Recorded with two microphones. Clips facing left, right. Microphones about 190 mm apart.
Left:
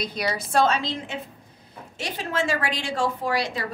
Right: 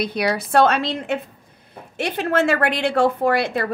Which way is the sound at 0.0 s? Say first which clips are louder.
Right 6 dB; 60° right (ahead or behind).